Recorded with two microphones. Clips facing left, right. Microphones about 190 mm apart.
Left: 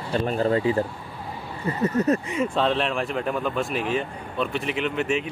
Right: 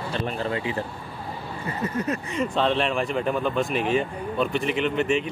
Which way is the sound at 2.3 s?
Centre (ahead or behind).